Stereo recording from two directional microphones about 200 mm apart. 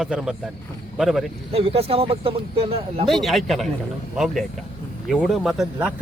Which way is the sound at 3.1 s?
Centre (ahead or behind).